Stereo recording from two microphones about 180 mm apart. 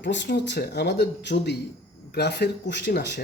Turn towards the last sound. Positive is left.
turn(degrees=65)  # may be behind; listen again after turning